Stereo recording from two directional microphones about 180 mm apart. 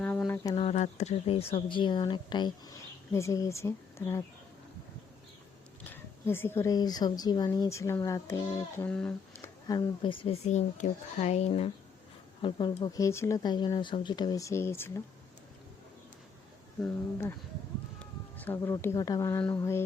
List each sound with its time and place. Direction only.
0.0 s a sound: 5° left (ahead or behind)
0.5 s a woman's voice: 35° left (ahead or behind); by 4.2 s 15° left (ahead or behind)
5.8 s a woman's voice: 10° left (ahead or behind)
16.8 s speech: 10° left (ahead or behind)